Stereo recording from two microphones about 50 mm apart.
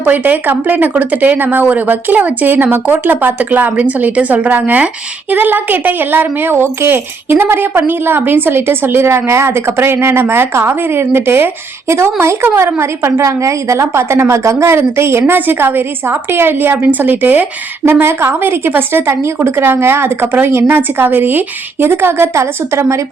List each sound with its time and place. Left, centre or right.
0.0 s speech: right
9.0 s speech: right
11.9 s a woman's voice: right
14.8 s speech: right
15.4 s speech: right
18.0 s speech: right
22.4 s a woman's voice: right